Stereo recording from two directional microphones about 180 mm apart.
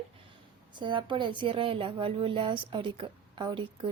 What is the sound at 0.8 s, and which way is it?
Speech, 25° right (ahead or behind).